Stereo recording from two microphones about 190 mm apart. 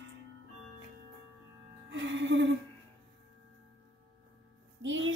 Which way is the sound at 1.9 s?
70° right (ahead or behind).